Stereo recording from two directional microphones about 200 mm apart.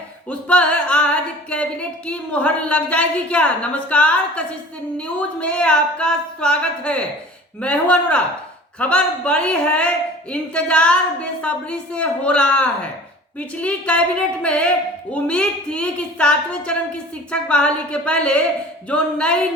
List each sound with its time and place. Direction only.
0.3 s music: 5° left (ahead or behind)
2.0 s a woman's voice: 5° left (ahead or behind)